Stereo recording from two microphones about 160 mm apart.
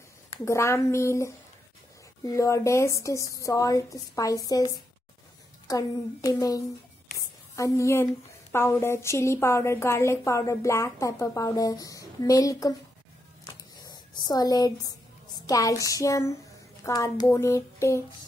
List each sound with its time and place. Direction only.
0.5 s a woman's voice: 15° left (ahead or behind)
13.4 s a sound: 25° left (ahead or behind)
15.4 s a woman's voice: 20° left (ahead or behind)